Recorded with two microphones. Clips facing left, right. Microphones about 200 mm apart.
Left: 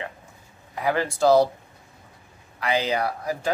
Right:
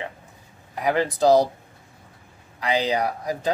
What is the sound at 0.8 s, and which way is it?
Speech, 20° right (ahead or behind).